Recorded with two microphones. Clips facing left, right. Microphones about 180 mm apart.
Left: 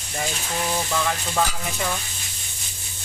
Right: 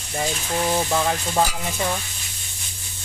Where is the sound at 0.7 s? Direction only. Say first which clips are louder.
Right 3 dB; 25° right (ahead or behind).